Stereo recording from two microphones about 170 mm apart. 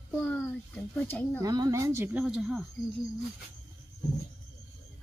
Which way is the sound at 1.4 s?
20° right (ahead or behind).